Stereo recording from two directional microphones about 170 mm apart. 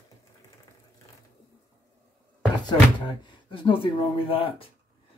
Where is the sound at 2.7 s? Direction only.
30° left (ahead or behind).